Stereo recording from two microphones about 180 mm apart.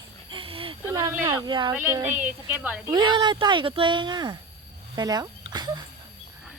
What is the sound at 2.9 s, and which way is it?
Speech, 25° right (ahead or behind).